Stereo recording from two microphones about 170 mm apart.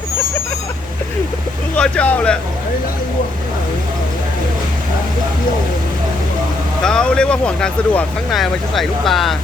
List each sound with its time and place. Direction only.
1.7 s speech: 5° left (ahead or behind)
6.8 s speech: 5° left (ahead or behind)